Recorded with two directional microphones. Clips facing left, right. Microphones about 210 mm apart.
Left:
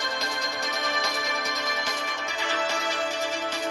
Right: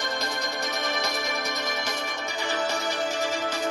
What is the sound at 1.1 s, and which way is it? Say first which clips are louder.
Music: right 1 dB; 40° right (ahead or behind).